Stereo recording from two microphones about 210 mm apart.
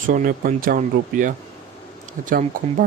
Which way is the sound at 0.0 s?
40° right (ahead or behind).